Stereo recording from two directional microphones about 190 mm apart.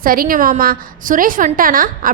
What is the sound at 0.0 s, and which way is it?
A woman's voice, 50° right (ahead or behind).